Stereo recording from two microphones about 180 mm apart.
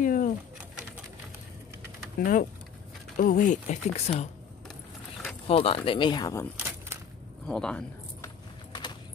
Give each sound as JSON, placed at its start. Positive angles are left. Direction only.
{"t": 0.0, "sound": "a sound", "side_deg": 50}
{"t": 2.1, "sound": "speech", "side_deg": 45}
{"t": 5.5, "sound": "speech", "side_deg": 30}
{"t": 7.4, "sound": "speech", "side_deg": 5}